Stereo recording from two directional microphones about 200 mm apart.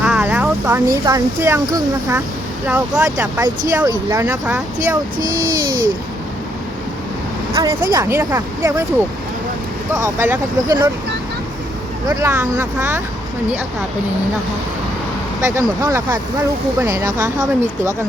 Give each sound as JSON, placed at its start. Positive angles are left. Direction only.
{"t": 0.0, "sound": "speech", "side_deg": -5}
{"t": 5.1, "sound": "a child's voice", "side_deg": -45}
{"t": 7.5, "sound": "speech", "side_deg": -15}
{"t": 12.0, "sound": "speech", "side_deg": -10}
{"t": 15.4, "sound": "speech", "side_deg": -10}